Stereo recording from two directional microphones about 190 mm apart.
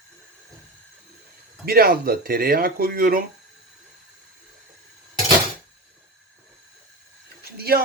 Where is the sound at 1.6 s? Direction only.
50° right (ahead or behind).